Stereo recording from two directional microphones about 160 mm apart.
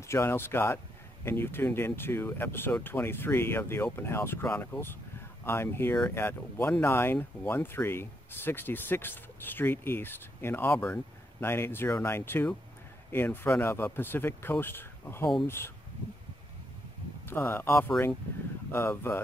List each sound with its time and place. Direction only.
0.0 s speech: 15° left (ahead or behind)
17.3 s speech: 15° left (ahead or behind)